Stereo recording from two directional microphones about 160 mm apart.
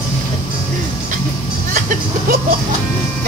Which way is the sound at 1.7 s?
55° right (ahead or behind).